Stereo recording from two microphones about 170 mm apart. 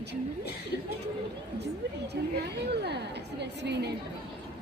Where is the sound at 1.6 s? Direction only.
80° right.